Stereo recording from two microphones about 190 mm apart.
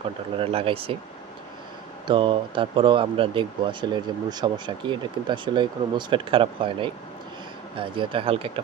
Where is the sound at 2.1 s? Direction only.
25° right (ahead or behind).